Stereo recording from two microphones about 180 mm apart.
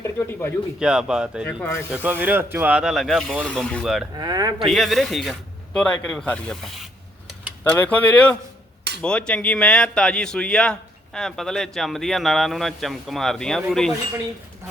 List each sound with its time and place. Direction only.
0.0 s speech: 15° left (ahead or behind)
0.8 s speech: 5° right (ahead or behind)
1.5 s speech: 10° left (ahead or behind)
1.9 s speech: 10° right (ahead or behind)
4.1 s speech: 20° right (ahead or behind)
4.6 s speech: centre (ahead or behind)